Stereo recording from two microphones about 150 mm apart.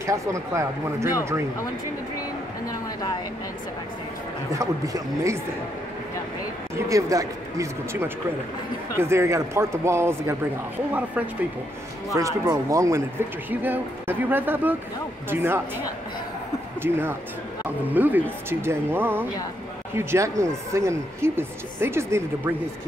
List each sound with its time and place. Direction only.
0.0 s speech: 20° right (ahead or behind)
4.5 s speech: 20° right (ahead or behind)
6.9 s speech: 20° right (ahead or behind)
12.1 s speech: 20° right (ahead or behind)
16.8 s speech: 15° right (ahead or behind)